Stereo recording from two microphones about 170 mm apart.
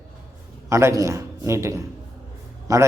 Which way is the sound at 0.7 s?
15° right (ahead or behind).